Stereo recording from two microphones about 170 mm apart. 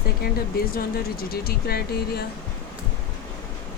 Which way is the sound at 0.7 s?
60° left (ahead or behind).